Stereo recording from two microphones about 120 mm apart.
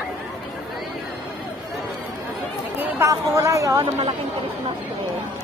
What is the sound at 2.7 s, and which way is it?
Chatter, 15° right (ahead or behind).